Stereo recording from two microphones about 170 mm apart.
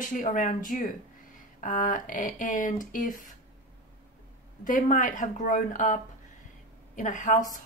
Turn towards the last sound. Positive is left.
turn(degrees=50)  # may be behind; listen again after turning